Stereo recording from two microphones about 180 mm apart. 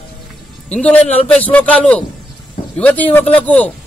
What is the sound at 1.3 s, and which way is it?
A man's voice, 5° left (ahead or behind).